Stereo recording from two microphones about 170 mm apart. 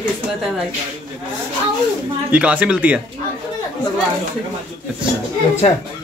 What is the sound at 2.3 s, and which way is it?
Speech, 10° right (ahead or behind).